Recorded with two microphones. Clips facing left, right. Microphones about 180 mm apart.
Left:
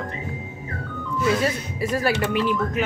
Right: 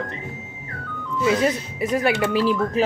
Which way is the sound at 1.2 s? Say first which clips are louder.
Right 2 dB; 20° right (ahead or behind).